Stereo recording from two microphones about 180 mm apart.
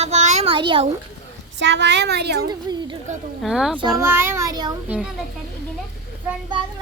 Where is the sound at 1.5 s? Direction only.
75° right (ahead or behind).